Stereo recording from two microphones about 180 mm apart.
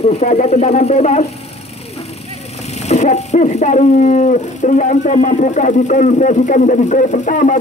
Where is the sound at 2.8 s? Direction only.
40° left (ahead or behind).